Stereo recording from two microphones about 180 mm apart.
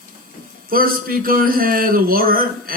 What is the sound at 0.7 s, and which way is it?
Speech, 55° right (ahead or behind).